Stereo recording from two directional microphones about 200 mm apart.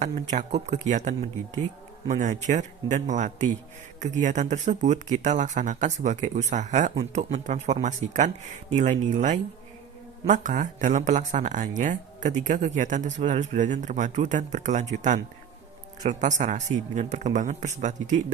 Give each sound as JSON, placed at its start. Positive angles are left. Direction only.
{"t": 0.0, "sound": "speech", "side_deg": -35}